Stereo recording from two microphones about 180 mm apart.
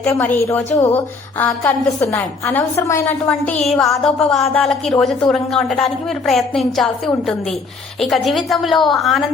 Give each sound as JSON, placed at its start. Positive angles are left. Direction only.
{"t": 0.0, "sound": "a woman's voice", "side_deg": 10}